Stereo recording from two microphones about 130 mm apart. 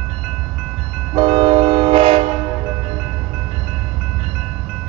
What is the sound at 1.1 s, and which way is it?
Train, 45° right (ahead or behind).